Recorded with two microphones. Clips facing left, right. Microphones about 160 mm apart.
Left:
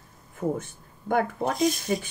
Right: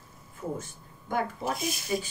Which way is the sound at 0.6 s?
60° left (ahead or behind).